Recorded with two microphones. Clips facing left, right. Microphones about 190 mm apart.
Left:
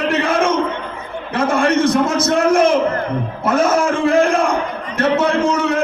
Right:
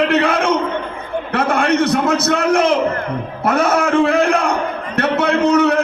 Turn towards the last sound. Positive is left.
turn(degrees=-65)  # may be behind; listen again after turning